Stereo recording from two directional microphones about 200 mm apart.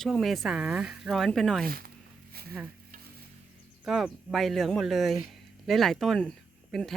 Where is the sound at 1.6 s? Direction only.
50° right (ahead or behind).